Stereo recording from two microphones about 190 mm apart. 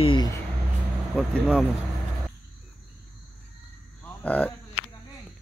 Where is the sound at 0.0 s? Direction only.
25° left (ahead or behind).